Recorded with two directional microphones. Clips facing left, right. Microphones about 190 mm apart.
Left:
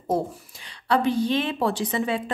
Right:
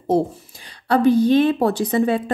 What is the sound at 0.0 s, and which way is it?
Speech, 35° right (ahead or behind).